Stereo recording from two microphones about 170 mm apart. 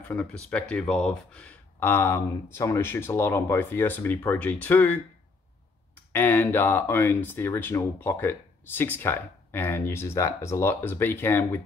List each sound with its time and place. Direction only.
0.1 s speech: 5° left (ahead or behind)
6.1 s speech: 10° left (ahead or behind)